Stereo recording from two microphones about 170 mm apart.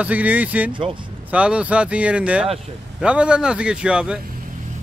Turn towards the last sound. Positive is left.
turn(degrees=-5)  # may be behind; listen again after turning